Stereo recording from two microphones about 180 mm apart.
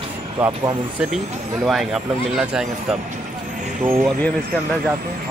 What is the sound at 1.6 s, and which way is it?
Speech, centre (ahead or behind).